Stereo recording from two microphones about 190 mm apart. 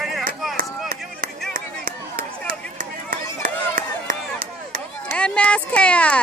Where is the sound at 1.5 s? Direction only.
45° right (ahead or behind).